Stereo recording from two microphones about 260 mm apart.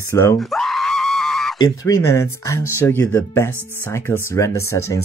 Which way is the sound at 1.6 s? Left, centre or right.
Centre.